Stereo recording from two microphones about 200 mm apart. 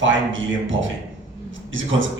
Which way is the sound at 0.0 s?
70° right (ahead or behind).